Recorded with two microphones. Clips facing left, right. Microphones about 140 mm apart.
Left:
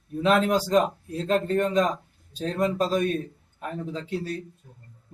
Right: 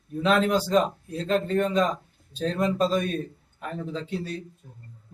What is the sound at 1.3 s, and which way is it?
A man's voice, 5° left (ahead or behind).